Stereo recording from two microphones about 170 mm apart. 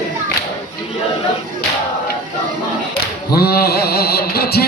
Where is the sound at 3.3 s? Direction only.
65° left (ahead or behind).